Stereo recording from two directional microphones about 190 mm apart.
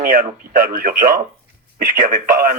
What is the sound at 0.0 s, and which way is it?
Speech, 50° right (ahead or behind).